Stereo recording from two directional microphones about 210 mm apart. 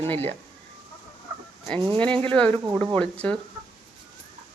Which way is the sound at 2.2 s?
5° left (ahead or behind).